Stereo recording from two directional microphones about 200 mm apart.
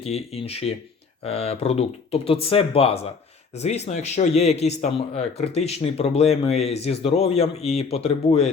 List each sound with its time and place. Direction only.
0.0 s speech: 30° left (ahead or behind)